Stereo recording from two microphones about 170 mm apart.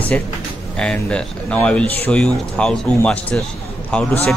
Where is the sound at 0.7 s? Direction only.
5° left (ahead or behind).